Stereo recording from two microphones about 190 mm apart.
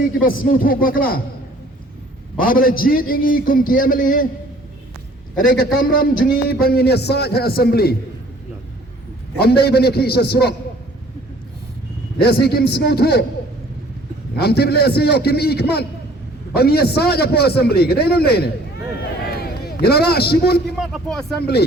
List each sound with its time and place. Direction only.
0.2 s a man's voice: 45° left (ahead or behind)
2.4 s a man's voice: 50° left (ahead or behind)
5.8 s a man's voice: 50° left (ahead or behind)
9.4 s a man's voice: 55° left (ahead or behind)
12.2 s a man's voice: 55° left (ahead or behind)
14.3 s a man's voice: 55° left (ahead or behind)
19.2 s a sound: 55° left (ahead or behind)
20.7 s speech: centre (ahead or behind)